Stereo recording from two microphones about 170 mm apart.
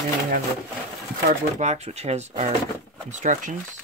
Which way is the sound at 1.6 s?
40° right (ahead or behind).